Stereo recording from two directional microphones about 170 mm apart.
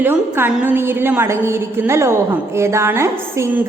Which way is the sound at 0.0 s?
10° right (ahead or behind).